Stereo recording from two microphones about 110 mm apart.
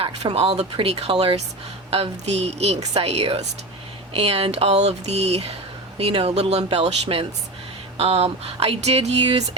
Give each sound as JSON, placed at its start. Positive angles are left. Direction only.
{"t": 0.0, "sound": "a woman's voice", "side_deg": -60}